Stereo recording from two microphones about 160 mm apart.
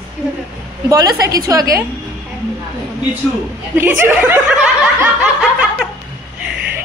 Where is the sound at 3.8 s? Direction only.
15° right (ahead or behind).